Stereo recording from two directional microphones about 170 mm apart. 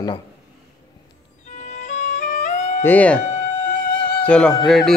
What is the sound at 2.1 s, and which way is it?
Music, 45° left (ahead or behind).